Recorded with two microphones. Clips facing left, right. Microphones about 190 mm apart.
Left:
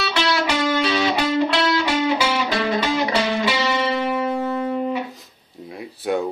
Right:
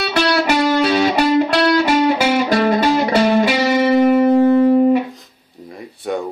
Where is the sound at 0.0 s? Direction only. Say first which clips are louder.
Right 5 dB; 50° right (ahead or behind).